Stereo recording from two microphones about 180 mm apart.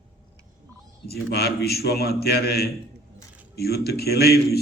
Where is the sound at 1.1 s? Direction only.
65° left (ahead or behind).